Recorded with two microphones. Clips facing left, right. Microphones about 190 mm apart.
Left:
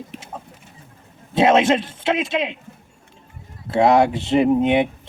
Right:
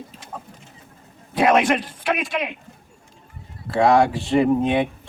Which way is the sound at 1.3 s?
25° left (ahead or behind).